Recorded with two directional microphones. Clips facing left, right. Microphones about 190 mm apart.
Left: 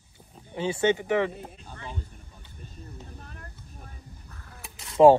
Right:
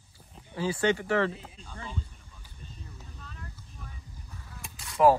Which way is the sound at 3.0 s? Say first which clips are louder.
Left 2 dB; 55° left (ahead or behind).